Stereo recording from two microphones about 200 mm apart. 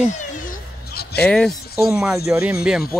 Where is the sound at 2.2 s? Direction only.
15° right (ahead or behind).